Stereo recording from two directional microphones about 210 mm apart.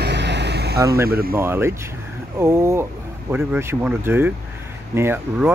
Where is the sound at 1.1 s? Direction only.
45° right (ahead or behind).